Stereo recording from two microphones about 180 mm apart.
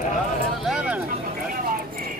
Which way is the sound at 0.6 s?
5° right (ahead or behind).